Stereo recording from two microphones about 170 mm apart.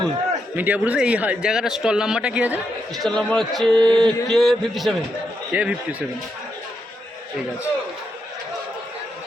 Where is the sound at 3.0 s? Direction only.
5° left (ahead or behind).